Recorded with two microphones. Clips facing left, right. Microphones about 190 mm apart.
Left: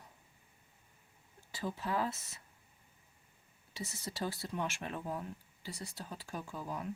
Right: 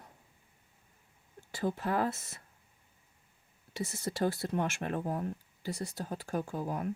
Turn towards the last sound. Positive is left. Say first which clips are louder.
# right 6 dB
turn(degrees=-50)  # may be behind; listen again after turning